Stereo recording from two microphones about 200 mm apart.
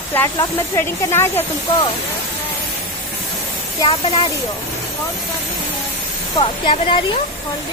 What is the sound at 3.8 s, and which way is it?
Speech, 30° left (ahead or behind).